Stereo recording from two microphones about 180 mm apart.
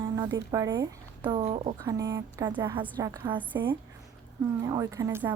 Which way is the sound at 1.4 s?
35° right (ahead or behind).